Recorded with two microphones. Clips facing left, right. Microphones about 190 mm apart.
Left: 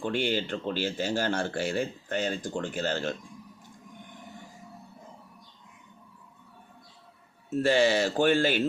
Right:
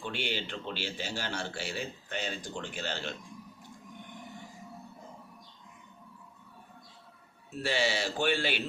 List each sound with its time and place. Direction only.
0.0 s speech: 45° left (ahead or behind)
7.5 s speech: 45° left (ahead or behind)